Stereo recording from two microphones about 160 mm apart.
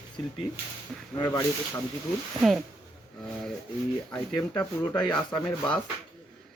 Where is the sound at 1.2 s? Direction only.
15° left (ahead or behind).